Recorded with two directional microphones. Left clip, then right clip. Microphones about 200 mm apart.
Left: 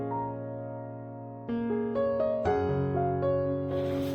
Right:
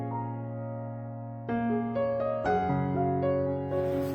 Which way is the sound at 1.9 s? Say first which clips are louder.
Left 2 dB; centre (ahead or behind).